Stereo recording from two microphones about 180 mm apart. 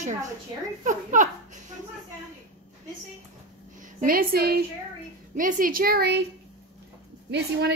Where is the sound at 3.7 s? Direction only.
55° right (ahead or behind).